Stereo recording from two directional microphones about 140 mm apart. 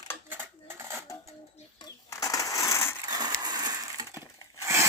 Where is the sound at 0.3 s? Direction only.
15° right (ahead or behind).